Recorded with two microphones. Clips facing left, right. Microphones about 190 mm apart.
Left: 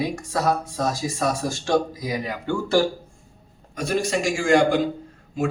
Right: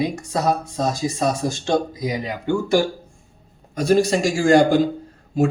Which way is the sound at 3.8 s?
35° right (ahead or behind).